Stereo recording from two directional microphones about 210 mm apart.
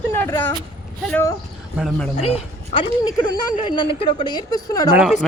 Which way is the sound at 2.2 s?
30° left (ahead or behind).